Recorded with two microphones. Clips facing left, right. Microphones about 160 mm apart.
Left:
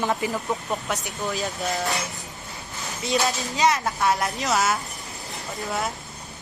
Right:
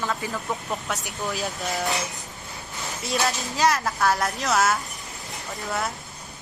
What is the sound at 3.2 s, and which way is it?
A woman's voice, centre (ahead or behind).